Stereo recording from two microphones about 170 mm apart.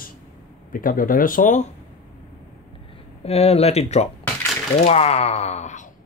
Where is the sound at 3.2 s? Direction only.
35° left (ahead or behind).